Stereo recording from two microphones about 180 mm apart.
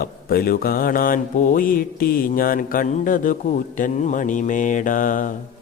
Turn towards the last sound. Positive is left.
turn(degrees=50)  # may be behind; listen again after turning